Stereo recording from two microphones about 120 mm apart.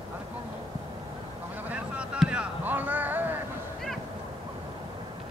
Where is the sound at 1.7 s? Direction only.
10° right (ahead or behind).